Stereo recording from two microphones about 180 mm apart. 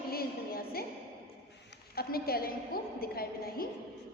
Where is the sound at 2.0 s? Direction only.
55° left (ahead or behind).